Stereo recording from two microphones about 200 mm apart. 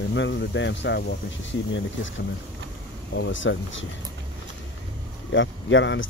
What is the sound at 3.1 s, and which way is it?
Speech, 65° left (ahead or behind).